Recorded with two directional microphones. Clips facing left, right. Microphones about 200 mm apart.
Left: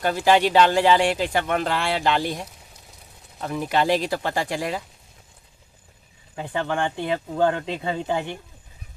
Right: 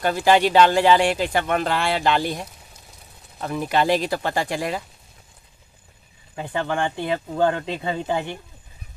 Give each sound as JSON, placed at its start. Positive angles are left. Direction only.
{"t": 0.0, "sound": "speech", "side_deg": -45}
{"t": 3.3, "sound": "speech", "side_deg": -50}
{"t": 6.3, "sound": "speech", "side_deg": -5}